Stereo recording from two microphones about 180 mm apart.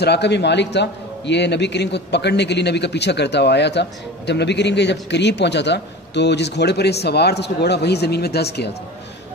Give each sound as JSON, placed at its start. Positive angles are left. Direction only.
{"t": 0.0, "sound": "a man's voice", "side_deg": 70}